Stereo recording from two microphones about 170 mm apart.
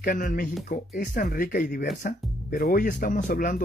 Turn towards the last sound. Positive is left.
turn(degrees=50)  # may be behind; listen again after turning